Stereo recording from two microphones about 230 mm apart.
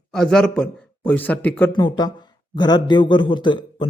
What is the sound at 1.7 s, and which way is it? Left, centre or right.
A man's voice, centre.